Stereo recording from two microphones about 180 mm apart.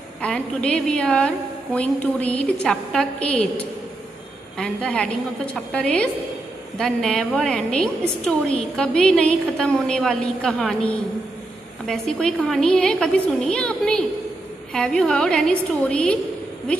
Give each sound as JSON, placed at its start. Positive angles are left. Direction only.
{"t": 0.2, "sound": "a woman's voice", "side_deg": 5}
{"t": 4.6, "sound": "a woman's voice", "side_deg": 5}